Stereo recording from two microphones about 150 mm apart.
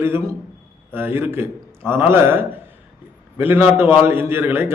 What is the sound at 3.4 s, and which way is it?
A man's voice, 15° right (ahead or behind).